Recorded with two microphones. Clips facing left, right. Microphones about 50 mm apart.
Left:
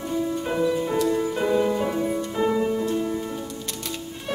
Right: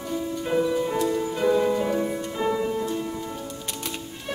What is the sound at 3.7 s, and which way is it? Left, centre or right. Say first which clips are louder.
Music: left 1 dB; centre.